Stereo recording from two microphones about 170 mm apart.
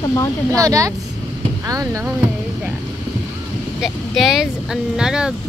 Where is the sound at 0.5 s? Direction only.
20° right (ahead or behind).